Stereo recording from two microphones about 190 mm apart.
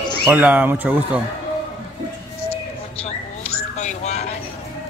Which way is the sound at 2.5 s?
30° left (ahead or behind).